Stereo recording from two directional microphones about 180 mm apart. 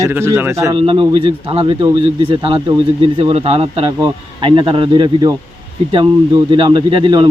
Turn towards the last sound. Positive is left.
turn(degrees=-25)  # may be behind; listen again after turning